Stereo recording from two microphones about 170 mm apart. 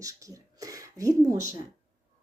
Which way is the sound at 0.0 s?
20° right (ahead or behind).